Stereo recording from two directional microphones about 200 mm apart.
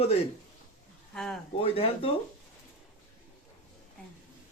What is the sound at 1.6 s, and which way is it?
Speech, 30° left (ahead or behind).